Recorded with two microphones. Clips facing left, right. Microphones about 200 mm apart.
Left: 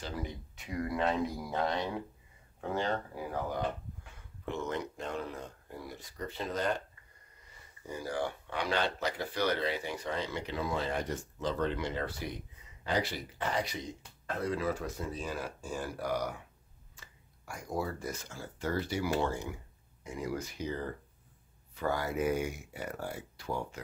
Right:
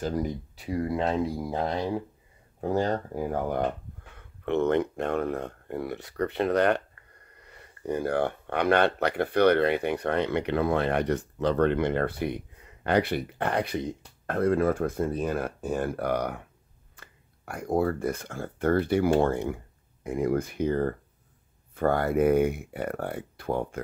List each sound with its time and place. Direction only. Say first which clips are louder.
0.0 s speech: right 10 dB; 40° right (ahead or behind)
2.6 s speech: right 7 dB; 40° right (ahead or behind)